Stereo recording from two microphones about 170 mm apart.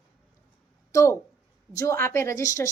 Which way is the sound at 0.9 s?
15° left (ahead or behind).